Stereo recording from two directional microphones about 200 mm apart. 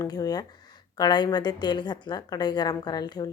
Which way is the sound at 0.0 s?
20° left (ahead or behind).